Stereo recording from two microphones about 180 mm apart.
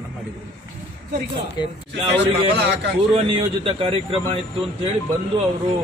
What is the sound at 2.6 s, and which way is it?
Speech, 75° right (ahead or behind).